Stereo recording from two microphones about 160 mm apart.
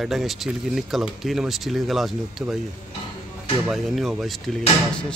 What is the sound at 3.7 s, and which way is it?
Speech, centre (ahead or behind).